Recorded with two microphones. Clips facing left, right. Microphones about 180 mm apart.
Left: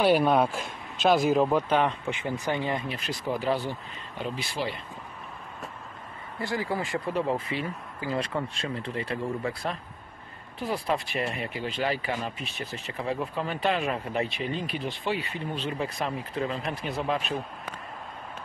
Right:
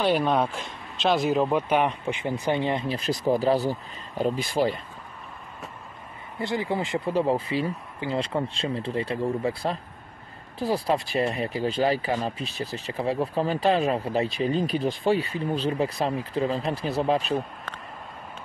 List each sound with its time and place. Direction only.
0.0 s speech: 5° left (ahead or behind)
1.5 s speech: 10° right (ahead or behind)
2.9 s speech: 35° right (ahead or behind)
6.4 s speech: 20° right (ahead or behind)